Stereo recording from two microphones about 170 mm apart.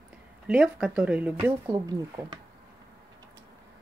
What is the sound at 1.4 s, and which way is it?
A woman's voice, 20° right (ahead or behind).